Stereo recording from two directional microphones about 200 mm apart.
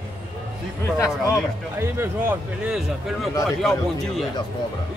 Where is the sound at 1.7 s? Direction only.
10° right (ahead or behind).